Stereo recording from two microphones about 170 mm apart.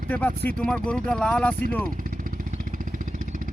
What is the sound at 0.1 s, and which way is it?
Speech, 10° left (ahead or behind).